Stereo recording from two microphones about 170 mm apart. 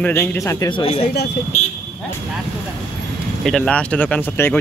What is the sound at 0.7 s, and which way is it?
Speech, 35° left (ahead or behind).